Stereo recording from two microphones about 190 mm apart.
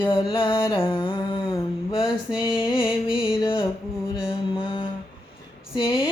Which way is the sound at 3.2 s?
25° left (ahead or behind).